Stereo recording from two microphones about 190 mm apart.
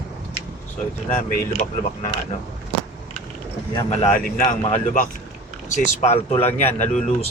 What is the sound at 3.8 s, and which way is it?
Speech, 30° left (ahead or behind).